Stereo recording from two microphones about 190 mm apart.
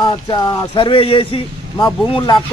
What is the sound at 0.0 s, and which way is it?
Speech, 20° left (ahead or behind).